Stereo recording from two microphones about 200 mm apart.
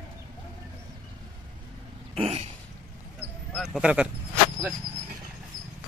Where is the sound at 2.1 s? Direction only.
30° right (ahead or behind).